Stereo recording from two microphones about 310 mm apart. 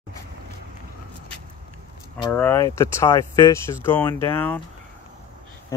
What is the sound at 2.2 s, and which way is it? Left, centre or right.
Speech, centre.